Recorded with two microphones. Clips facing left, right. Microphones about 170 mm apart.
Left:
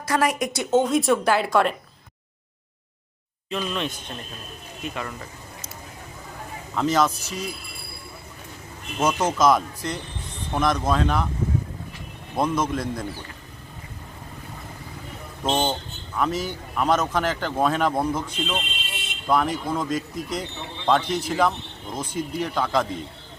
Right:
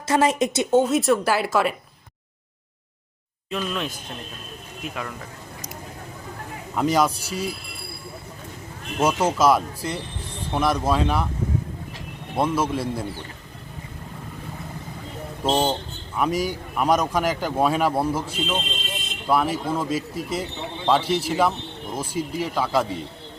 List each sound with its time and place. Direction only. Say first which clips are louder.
0.1 s speech: right 3 dB; 25° right (ahead or behind)
0.7 s speech: even; 5° right (ahead or behind)
3.7 s speech: even; centre (ahead or behind)
6.7 s speech: right 1 dB; 10° right (ahead or behind)
9.0 s speech: right 1 dB; 10° right (ahead or behind)
12.4 s speech: right 1 dB; 10° right (ahead or behind)
15.4 s speech: right 2 dB; 10° right (ahead or behind)